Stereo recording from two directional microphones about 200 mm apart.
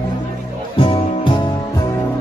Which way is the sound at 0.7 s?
25° left (ahead or behind).